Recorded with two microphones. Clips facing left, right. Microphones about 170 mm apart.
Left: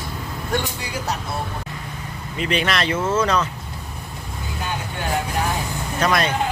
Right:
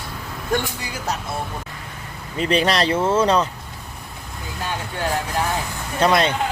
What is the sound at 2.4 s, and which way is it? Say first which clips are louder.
Speech: right 3 dB; 35° right (ahead or behind).